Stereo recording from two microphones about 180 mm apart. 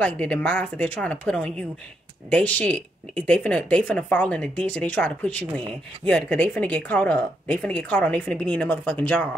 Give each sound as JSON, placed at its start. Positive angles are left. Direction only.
{"t": 0.0, "sound": "speech", "side_deg": 5}